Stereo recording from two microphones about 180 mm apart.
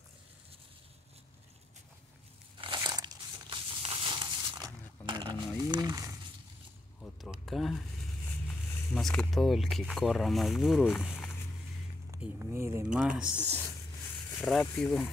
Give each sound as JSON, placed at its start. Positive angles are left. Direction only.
{"t": 2.5, "sound": "crumpling", "side_deg": -25}
{"t": 7.0, "sound": "a sound", "side_deg": 0}
{"t": 8.9, "sound": "speech", "side_deg": 5}
{"t": 12.2, "sound": "speech", "side_deg": -15}
{"t": 14.4, "sound": "speech", "side_deg": 5}